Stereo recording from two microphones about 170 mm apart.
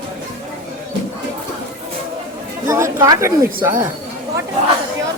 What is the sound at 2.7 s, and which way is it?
A woman's voice, 15° right (ahead or behind).